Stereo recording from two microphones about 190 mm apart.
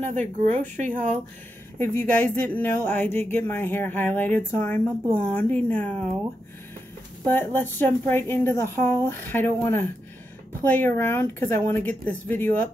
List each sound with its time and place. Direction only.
0.0 s speech: 40° right (ahead or behind)
1.8 s speech: 10° left (ahead or behind)
7.2 s speech: 10° left (ahead or behind)